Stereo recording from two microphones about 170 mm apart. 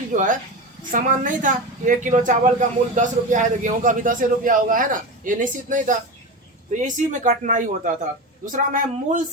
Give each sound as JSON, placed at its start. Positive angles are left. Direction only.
{"t": 0.9, "sound": "a woman's voice", "side_deg": -50}